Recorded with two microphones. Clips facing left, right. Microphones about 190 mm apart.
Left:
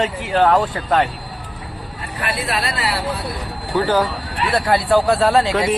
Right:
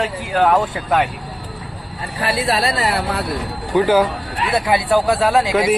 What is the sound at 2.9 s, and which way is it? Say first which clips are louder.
Speech: right 3 dB; 65° right (ahead or behind).